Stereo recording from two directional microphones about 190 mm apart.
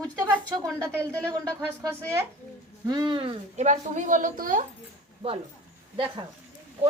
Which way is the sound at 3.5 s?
40° right (ahead or behind).